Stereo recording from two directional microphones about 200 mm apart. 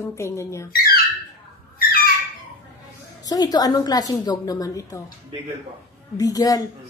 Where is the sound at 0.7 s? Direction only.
45° left (ahead or behind).